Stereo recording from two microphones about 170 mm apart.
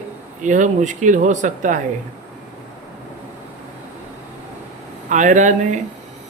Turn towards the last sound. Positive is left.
turn(degrees=-45)  # may be behind; listen again after turning